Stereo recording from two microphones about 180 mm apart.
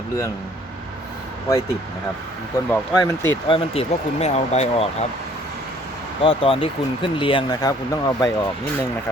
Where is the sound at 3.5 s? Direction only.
30° left (ahead or behind).